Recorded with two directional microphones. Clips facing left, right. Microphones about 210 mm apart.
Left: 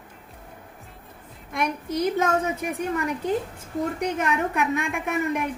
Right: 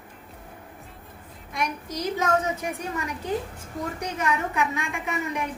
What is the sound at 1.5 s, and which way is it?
A woman's voice, 55° left (ahead or behind).